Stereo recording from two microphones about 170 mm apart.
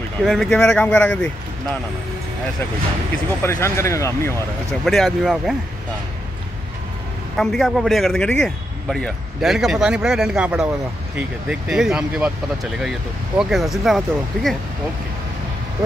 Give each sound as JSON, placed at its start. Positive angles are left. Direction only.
{"t": 0.2, "sound": "a man's voice", "side_deg": 0}
{"t": 3.4, "sound": "speech", "side_deg": 15}
{"t": 4.8, "sound": "a man's voice", "side_deg": 0}
{"t": 7.3, "sound": "a man's voice", "side_deg": 0}
{"t": 13.4, "sound": "a man's voice", "side_deg": 0}